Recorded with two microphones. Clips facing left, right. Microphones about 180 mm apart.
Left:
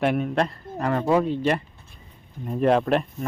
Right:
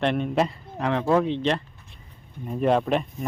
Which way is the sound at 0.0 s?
5° left (ahead or behind).